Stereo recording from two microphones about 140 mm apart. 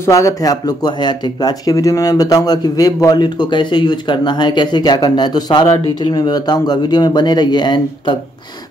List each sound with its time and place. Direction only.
0.0 s speech: 25° left (ahead or behind)